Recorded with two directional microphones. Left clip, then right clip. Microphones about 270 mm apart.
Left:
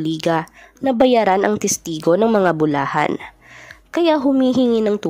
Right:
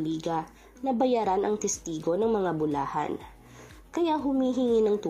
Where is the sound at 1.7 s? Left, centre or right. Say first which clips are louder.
Left 10 dB; left.